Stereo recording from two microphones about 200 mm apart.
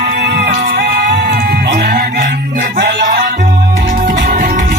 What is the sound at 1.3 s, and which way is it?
Music, 50° right (ahead or behind).